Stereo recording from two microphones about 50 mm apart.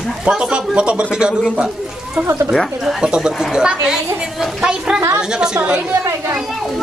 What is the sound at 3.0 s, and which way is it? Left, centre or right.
A child's voice, centre.